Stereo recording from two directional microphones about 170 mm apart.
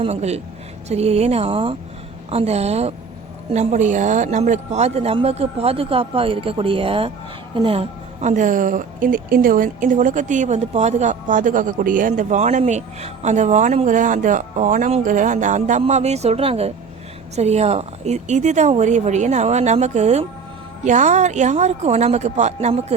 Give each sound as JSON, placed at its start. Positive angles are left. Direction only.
{"t": 0.0, "sound": "a woman's voice", "side_deg": -40}